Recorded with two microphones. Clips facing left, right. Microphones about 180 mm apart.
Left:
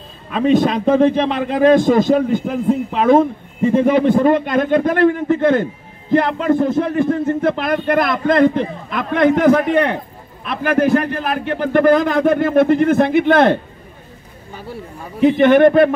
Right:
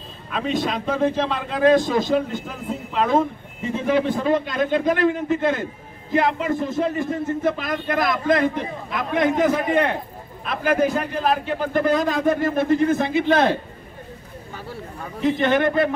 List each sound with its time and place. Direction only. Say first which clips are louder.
1.1 s a man's voice: left 6 dB; 65° left (ahead or behind)
14.5 s speech: left 4 dB; 15° left (ahead or behind)
15.2 s a man's voice: left 9 dB; 60° left (ahead or behind)